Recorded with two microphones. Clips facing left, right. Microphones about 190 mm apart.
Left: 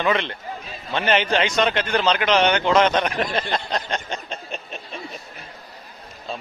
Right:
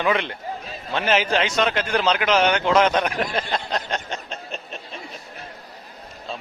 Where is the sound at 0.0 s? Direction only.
10° right (ahead or behind).